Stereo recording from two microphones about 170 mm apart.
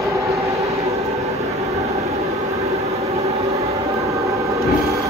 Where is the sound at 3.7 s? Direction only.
20° right (ahead or behind).